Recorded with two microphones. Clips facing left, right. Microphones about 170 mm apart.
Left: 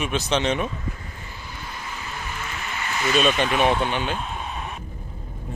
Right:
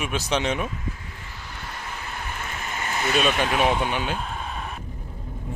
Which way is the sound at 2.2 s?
50° right (ahead or behind).